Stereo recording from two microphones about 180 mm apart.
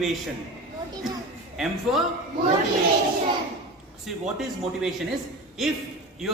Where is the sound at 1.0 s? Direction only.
Centre (ahead or behind).